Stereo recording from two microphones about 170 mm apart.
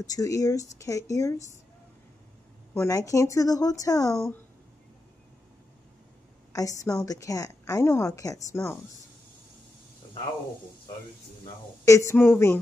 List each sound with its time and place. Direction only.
0.0 s a woman's voice: 20° left (ahead or behind)
2.7 s a woman's voice: 15° left (ahead or behind)
4.1 s speech: 5° left (ahead or behind)
6.5 s a woman's voice: 20° left (ahead or behind)
11.8 s speech: 20° left (ahead or behind)